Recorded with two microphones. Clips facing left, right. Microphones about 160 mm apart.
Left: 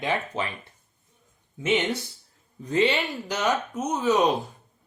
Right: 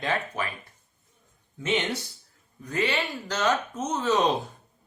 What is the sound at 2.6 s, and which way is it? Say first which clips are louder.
Speech: left 5 dB; 20° left (ahead or behind).